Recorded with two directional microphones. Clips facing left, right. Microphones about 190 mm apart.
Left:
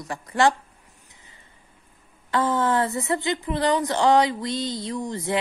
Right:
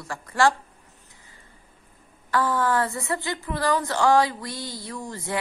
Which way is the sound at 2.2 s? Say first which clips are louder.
Left 1 dB; 20° left (ahead or behind).